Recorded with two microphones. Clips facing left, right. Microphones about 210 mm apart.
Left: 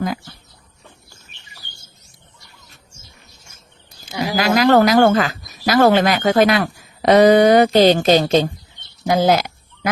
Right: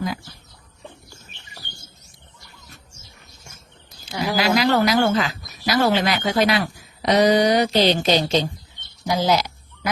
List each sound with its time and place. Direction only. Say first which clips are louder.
0.0 s speech: left 4 dB; 50° left (ahead or behind)
4.4 s speech: left 5 dB; 50° left (ahead or behind)